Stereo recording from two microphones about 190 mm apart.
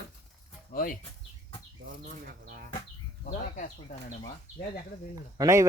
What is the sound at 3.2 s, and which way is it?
Speech, 40° left (ahead or behind).